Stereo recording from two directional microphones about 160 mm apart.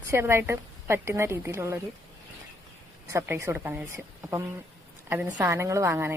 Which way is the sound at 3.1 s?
15° right (ahead or behind).